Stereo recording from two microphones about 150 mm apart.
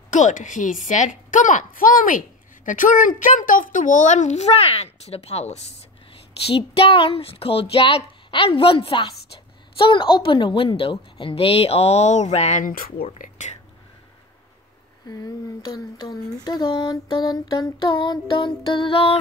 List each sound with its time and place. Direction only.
0.1 s a woman's voice: 55° left (ahead or behind)
13.2 s whispering: 55° left (ahead or behind)
15.0 s a sound: 25° left (ahead or behind)
18.0 s a woman's voice: 30° left (ahead or behind)